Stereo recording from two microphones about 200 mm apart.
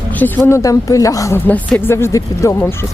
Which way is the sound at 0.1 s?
10° left (ahead or behind).